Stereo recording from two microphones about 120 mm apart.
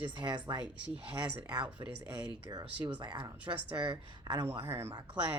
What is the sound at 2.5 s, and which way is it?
Speech, 35° right (ahead or behind).